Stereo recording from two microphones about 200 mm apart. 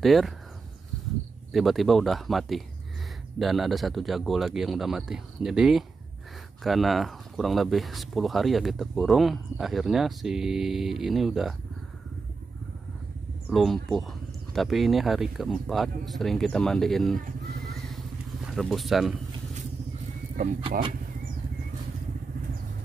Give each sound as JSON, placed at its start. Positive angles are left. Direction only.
{"t": 0.0, "sound": "speech", "side_deg": 0}
{"t": 1.5, "sound": "speech", "side_deg": 0}
{"t": 13.5, "sound": "speech", "side_deg": 0}
{"t": 17.6, "sound": "vehicle", "side_deg": 0}
{"t": 18.5, "sound": "speech", "side_deg": 0}
{"t": 20.4, "sound": "speech", "side_deg": -45}